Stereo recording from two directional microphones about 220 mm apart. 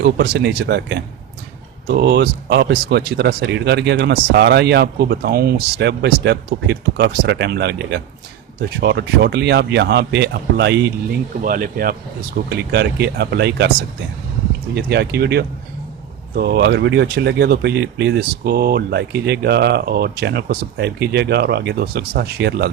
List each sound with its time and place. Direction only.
0.0 s speech: 50° right (ahead or behind)
11.4 s speech: 40° right (ahead or behind)
14.8 s speech: 50° right (ahead or behind)